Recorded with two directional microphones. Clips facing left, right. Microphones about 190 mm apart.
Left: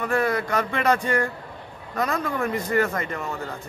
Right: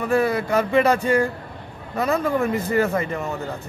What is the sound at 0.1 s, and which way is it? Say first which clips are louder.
A man's voice: right 4 dB; 10° right (ahead or behind).